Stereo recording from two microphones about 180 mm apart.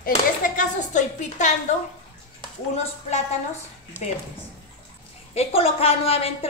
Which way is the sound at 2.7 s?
35° left (ahead or behind).